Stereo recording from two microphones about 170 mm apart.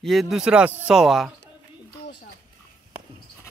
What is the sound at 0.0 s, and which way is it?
Speech, centre (ahead or behind).